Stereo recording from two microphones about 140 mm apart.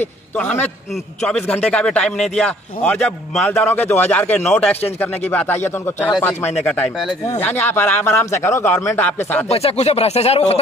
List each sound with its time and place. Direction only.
1.2 s a man's voice: 10° left (ahead or behind)
9.5 s speech: 45° left (ahead or behind)